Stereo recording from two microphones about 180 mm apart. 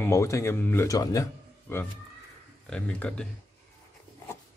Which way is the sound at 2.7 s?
5° left (ahead or behind).